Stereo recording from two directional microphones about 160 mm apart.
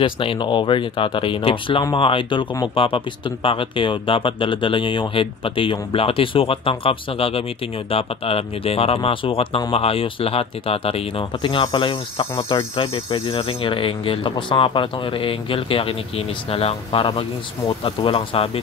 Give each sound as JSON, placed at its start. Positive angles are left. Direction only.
{"t": 0.0, "sound": "speech", "side_deg": 30}